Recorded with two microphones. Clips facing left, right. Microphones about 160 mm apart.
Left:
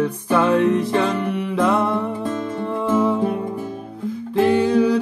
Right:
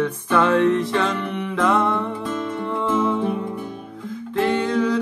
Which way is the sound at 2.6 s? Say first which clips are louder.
Left 3 dB; 40° left (ahead or behind).